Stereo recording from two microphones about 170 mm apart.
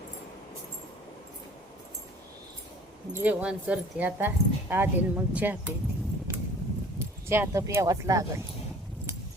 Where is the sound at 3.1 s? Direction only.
10° right (ahead or behind).